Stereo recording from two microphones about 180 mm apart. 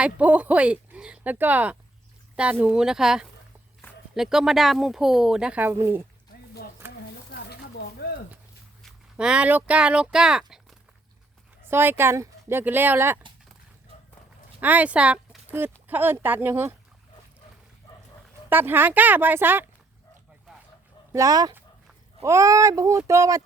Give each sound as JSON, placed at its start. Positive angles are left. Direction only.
{"t": 0.0, "sound": "speech", "side_deg": -10}
{"t": 7.5, "sound": "a sound", "side_deg": 60}
{"t": 8.8, "sound": "speech", "side_deg": -5}
{"t": 11.7, "sound": "speech", "side_deg": -10}
{"t": 14.6, "sound": "speech", "side_deg": -10}
{"t": 17.8, "sound": "dog", "side_deg": 15}
{"t": 18.4, "sound": "speech", "side_deg": -10}
{"t": 21.1, "sound": "speech", "side_deg": -20}